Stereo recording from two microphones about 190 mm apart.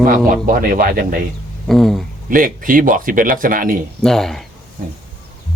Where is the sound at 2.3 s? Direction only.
45° right (ahead or behind).